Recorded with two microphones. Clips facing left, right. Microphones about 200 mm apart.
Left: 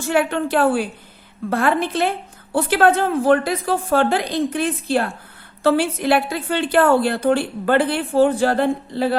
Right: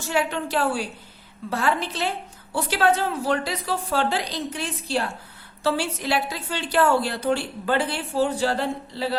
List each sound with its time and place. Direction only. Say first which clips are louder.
0.1 s a woman's voice: left 6 dB; 55° left (ahead or behind)